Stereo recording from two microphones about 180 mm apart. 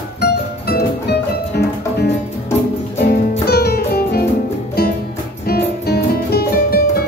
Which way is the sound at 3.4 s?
60° left (ahead or behind).